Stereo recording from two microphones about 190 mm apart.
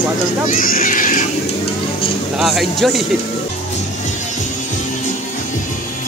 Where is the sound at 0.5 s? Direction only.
45° left (ahead or behind).